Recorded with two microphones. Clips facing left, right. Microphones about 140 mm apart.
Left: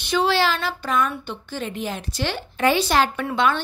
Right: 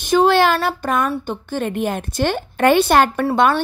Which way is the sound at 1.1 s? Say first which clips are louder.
Right 7 dB; 35° right (ahead or behind).